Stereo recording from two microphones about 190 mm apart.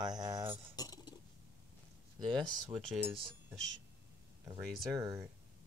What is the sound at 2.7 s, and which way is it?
Speech, centre (ahead or behind).